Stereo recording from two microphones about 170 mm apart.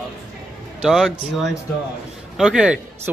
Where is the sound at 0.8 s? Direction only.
Centre (ahead or behind).